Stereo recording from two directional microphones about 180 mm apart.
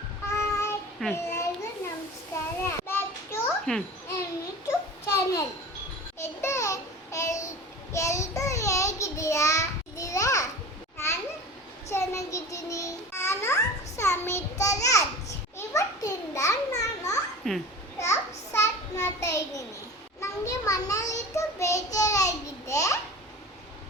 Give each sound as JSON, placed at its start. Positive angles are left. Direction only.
{"t": 0.3, "sound": "child singing", "side_deg": 15}
{"t": 1.1, "sound": "a sound", "side_deg": 15}
{"t": 2.3, "sound": "children playing", "side_deg": 15}
{"t": 5.0, "sound": "babbling", "side_deg": 15}
{"t": 6.1, "sound": "child singing", "side_deg": 15}
{"t": 10.9, "sound": "a sound", "side_deg": 15}
{"t": 11.9, "sound": "babbling", "side_deg": 15}
{"t": 15.5, "sound": "a sound", "side_deg": 20}
{"t": 17.5, "sound": "babbling", "side_deg": 0}
{"t": 18.0, "sound": "a sound", "side_deg": 15}
{"t": 20.2, "sound": "child singing", "side_deg": 20}
{"t": 21.8, "sound": "babbling", "side_deg": 20}